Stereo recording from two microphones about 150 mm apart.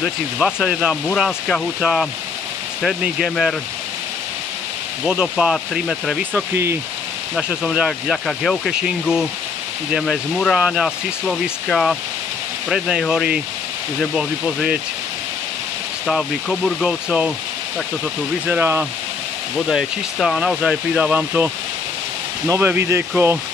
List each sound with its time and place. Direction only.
0.0 s speech: 5° right (ahead or behind)
5.0 s speech: 5° right (ahead or behind)
6.5 s speech: 15° right (ahead or behind)
7.3 s speech: 5° right (ahead or behind)
16.1 s speech: centre (ahead or behind)
18.5 s speech: 10° right (ahead or behind)
19.7 s speech: centre (ahead or behind)
22.5 s speech: 15° right (ahead or behind)